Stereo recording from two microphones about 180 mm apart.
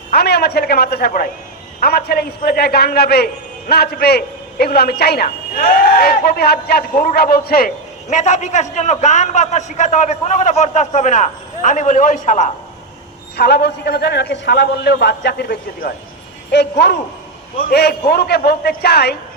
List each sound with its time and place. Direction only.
0.1 s a woman's voice: 65° left (ahead or behind)
8.1 s a man's voice: 40° left (ahead or behind)
13.3 s a man's voice: 65° left (ahead or behind)